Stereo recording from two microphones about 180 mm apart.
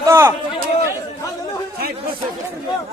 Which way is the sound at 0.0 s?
15° right (ahead or behind).